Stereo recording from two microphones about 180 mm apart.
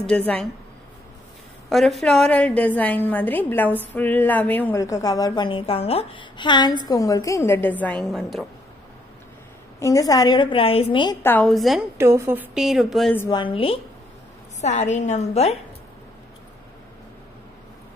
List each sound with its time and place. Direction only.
0.0 s a woman's voice: 5° left (ahead or behind)
1.7 s a woman's voice: centre (ahead or behind)
9.8 s a woman's voice: 20° left (ahead or behind)
11.2 s a woman's voice: 5° left (ahead or behind)
12.0 s a woman's voice: 15° right (ahead or behind)
13.3 s a woman's voice: 30° left (ahead or behind)